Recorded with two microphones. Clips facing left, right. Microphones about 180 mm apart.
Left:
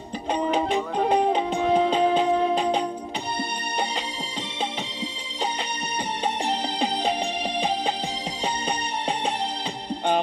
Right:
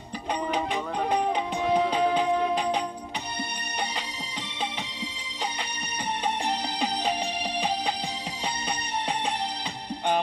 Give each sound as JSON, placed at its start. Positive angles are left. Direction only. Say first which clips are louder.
{"t": 0.7, "sound": "music", "louder": "left 5 dB", "side_deg": 25}
{"t": 6.2, "sound": "music", "louder": "left 3 dB", "side_deg": 25}